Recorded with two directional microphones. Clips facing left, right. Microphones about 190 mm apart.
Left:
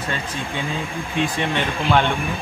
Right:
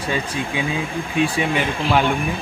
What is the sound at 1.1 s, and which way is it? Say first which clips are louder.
Speech: right 2 dB; 10° right (ahead or behind).